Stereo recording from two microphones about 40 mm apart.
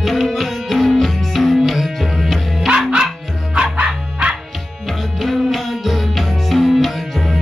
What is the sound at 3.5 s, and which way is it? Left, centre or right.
Music, right.